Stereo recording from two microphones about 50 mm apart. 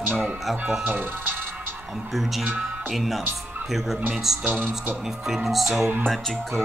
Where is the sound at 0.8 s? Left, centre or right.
Right.